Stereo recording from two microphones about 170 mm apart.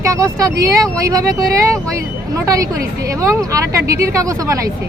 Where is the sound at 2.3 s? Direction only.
20° right (ahead or behind).